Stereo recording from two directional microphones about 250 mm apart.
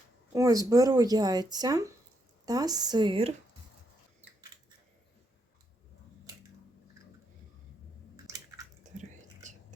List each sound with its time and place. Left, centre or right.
0.3 s speech: centre
8.1 s a sound: centre
8.8 s whispering: right